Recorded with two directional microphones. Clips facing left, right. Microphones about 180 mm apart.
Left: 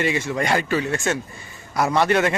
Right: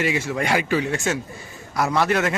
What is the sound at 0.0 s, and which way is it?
A man's voice, 5° right (ahead or behind).